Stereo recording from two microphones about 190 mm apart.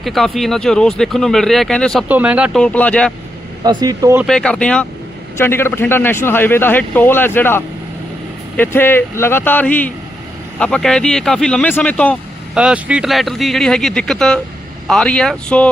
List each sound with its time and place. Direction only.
0.0 s speech: centre (ahead or behind)
2.0 s speech: 10° right (ahead or behind)
2.6 s speech: 5° left (ahead or behind)
3.6 s speech: 20° right (ahead or behind)
4.2 s speech: 5° left (ahead or behind)
12.5 s speech: 5° right (ahead or behind)